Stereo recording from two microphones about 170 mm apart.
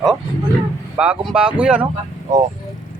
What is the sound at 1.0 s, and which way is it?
Speech, 5° right (ahead or behind).